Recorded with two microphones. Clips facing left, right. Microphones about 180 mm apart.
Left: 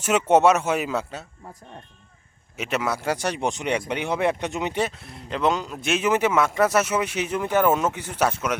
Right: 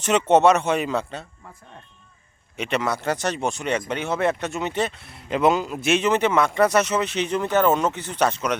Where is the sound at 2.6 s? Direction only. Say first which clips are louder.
Right 1 dB; 5° left (ahead or behind).